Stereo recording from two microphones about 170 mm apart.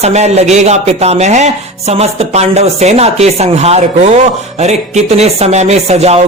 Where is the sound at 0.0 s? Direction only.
40° right (ahead or behind).